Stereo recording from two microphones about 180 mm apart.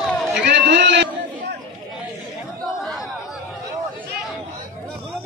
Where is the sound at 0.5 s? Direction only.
75° right (ahead or behind).